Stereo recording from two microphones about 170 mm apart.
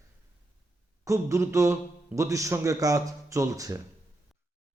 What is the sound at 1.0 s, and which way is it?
A man's voice, 15° right (ahead or behind).